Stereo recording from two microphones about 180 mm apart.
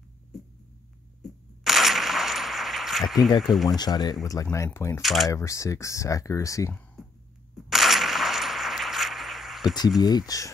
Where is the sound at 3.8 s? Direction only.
20° left (ahead or behind).